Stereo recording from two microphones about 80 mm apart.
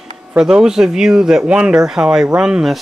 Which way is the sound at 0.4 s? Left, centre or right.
Centre.